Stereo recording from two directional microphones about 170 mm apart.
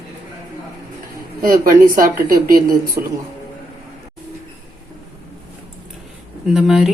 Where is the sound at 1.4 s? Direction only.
55° right (ahead or behind).